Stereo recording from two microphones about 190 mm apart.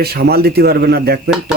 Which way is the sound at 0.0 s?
55° right (ahead or behind).